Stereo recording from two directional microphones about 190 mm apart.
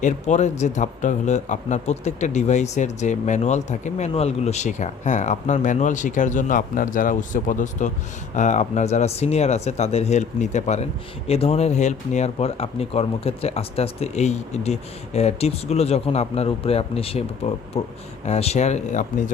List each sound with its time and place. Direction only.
0.0 s a man's voice: 40° left (ahead or behind)